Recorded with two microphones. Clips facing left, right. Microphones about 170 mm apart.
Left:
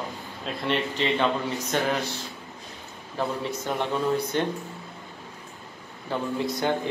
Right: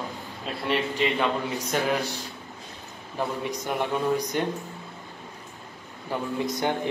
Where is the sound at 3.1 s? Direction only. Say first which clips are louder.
Left 1 dB; 15° right (ahead or behind).